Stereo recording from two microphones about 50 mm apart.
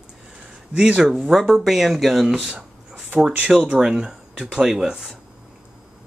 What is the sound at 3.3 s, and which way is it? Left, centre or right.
Speech, centre.